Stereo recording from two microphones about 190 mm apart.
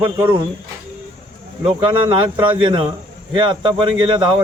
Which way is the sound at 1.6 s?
25° right (ahead or behind).